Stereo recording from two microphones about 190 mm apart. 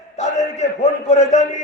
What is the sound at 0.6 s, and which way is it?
A man's voice, 35° left (ahead or behind).